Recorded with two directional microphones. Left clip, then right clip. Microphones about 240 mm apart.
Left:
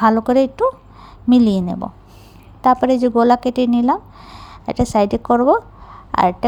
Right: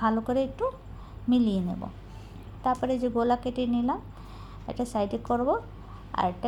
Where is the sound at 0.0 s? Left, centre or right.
Left.